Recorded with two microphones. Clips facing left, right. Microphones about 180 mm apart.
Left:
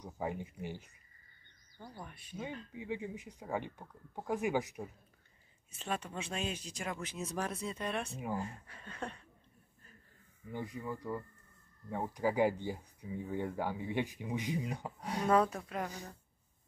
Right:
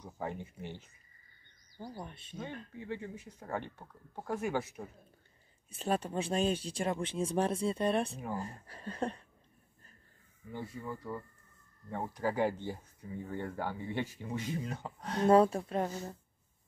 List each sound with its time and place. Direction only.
0.0 s speech: 10° left (ahead or behind)
1.8 s speech: 30° right (ahead or behind)
2.3 s speech: 10° left (ahead or behind)
5.7 s speech: 35° right (ahead or behind)
10.5 s speech: 15° left (ahead or behind)
15.2 s speech: 30° right (ahead or behind)